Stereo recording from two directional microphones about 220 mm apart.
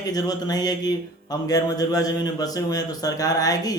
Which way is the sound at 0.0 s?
15° left (ahead or behind).